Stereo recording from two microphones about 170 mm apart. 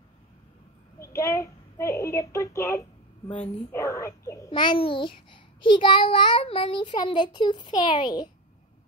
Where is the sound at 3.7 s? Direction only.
15° left (ahead or behind).